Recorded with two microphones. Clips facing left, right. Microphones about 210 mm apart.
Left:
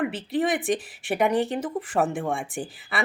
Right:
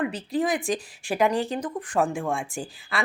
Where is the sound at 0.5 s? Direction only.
Centre (ahead or behind).